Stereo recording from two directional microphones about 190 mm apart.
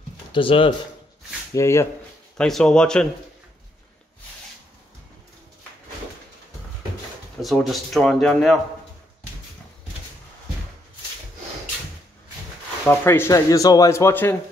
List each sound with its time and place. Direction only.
0.3 s speech: 25° left (ahead or behind)
1.5 s speech: 15° left (ahead or behind)
2.3 s speech: 5° left (ahead or behind)
7.4 s speech: centre (ahead or behind)
12.8 s speech: 10° left (ahead or behind)